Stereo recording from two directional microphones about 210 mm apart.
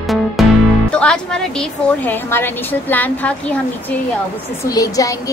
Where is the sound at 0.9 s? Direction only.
5° left (ahead or behind).